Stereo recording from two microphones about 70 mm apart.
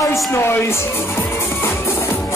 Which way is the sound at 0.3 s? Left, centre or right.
Left.